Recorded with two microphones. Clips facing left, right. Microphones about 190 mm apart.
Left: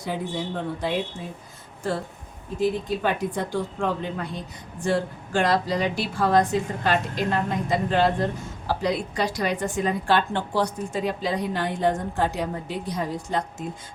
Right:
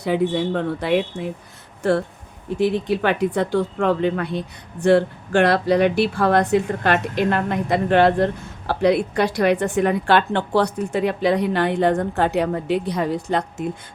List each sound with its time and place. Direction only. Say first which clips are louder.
0.0 s speech: right 9 dB; 70° right (ahead or behind)